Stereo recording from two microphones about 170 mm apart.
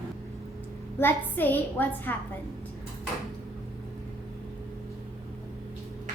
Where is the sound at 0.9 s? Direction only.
10° left (ahead or behind).